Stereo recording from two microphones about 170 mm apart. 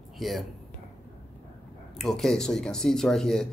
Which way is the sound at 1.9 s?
Centre (ahead or behind).